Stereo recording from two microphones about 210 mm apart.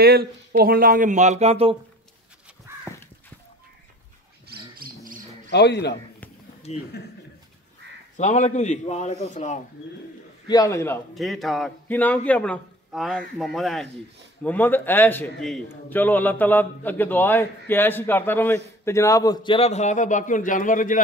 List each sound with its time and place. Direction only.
0.0 s speech: 45° right (ahead or behind); by 1.8 s 30° right (ahead or behind)
2.4 s crow: 5° right (ahead or behind)
4.5 s a sound: 40° right (ahead or behind)
5.5 s a man's voice: 55° left (ahead or behind)
8.2 s a man's voice: 35° left (ahead or behind)
10.5 s a man's voice: 15° left (ahead or behind)
11.1 s a man's voice: centre (ahead or behind); by 21.0 s 40° left (ahead or behind)